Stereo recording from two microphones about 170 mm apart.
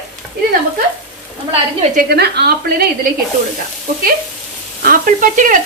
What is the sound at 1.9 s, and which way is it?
Speech, 70° right (ahead or behind).